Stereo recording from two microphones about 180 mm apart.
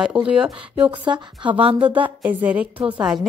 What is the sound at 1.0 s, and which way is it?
Speech, 25° right (ahead or behind).